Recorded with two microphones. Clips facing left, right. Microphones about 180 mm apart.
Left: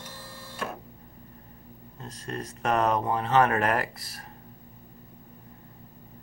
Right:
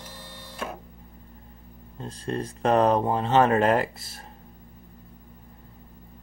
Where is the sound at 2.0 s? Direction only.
30° right (ahead or behind).